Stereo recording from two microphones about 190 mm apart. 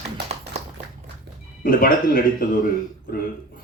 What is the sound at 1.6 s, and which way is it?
Speech, 50° left (ahead or behind).